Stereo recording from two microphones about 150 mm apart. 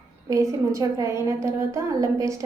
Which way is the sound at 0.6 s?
20° right (ahead or behind).